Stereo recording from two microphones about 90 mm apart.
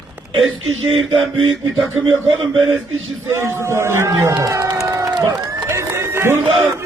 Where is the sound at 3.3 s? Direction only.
25° right (ahead or behind).